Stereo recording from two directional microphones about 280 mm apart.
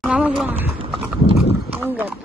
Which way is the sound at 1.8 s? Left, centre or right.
Centre.